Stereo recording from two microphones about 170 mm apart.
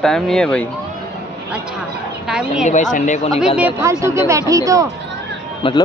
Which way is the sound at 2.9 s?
45° left (ahead or behind).